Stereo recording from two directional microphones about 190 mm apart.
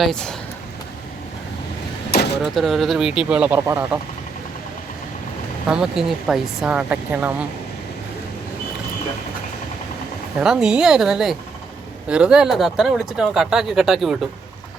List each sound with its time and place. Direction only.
0.0 s speech: 5° left (ahead or behind)
2.0 s a sound: 55° left (ahead or behind)
2.4 s speech: centre (ahead or behind)
5.6 s speech: 5° right (ahead or behind)
10.4 s speech: 5° right (ahead or behind)